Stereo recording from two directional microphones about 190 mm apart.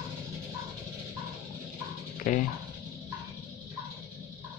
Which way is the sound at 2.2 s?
45° left (ahead or behind).